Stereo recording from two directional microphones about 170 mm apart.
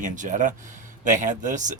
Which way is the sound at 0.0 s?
45° right (ahead or behind).